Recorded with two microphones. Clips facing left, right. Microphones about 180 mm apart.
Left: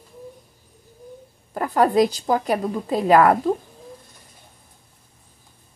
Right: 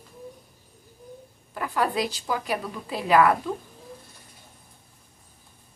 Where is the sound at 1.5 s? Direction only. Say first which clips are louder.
Left 8 dB; 40° left (ahead or behind).